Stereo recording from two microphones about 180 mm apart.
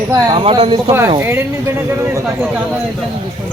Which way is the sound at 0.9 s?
15° right (ahead or behind).